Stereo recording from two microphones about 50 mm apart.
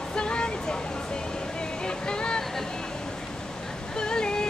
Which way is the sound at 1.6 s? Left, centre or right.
Centre.